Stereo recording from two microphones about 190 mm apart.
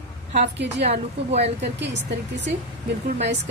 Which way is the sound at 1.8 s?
65° right (ahead or behind).